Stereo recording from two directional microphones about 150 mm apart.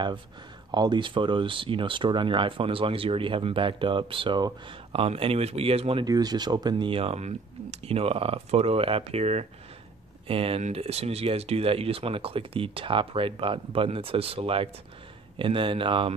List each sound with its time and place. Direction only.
0.7 s speech: 30° right (ahead or behind)
5.0 s speech: 40° right (ahead or behind)
6.0 s speech: 25° right (ahead or behind)